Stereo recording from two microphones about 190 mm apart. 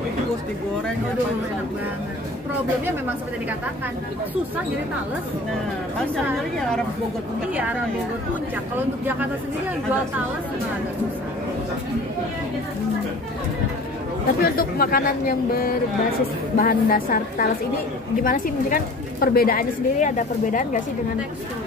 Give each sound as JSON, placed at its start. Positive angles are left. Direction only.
{"t": 14.4, "sound": "a woman's voice", "side_deg": 50}